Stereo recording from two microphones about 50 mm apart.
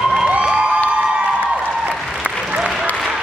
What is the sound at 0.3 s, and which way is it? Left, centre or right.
Music, centre.